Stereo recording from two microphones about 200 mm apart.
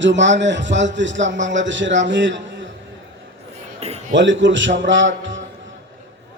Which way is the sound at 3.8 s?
30° right (ahead or behind).